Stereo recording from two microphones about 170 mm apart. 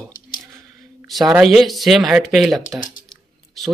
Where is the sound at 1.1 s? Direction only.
Centre (ahead or behind).